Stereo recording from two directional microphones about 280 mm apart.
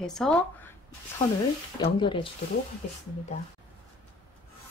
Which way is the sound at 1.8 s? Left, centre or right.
Centre.